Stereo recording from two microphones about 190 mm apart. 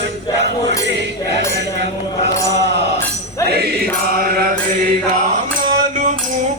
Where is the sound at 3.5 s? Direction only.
55° right (ahead or behind).